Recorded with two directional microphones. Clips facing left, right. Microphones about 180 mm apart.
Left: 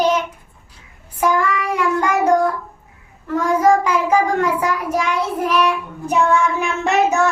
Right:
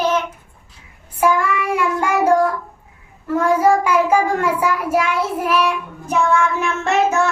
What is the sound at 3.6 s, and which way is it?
Child singing, 10° right (ahead or behind).